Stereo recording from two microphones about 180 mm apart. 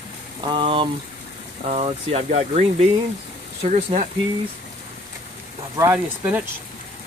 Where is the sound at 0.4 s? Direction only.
25° right (ahead or behind).